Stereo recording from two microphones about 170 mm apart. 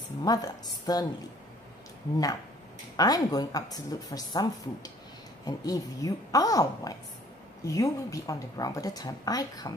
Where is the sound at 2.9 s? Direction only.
20° left (ahead or behind).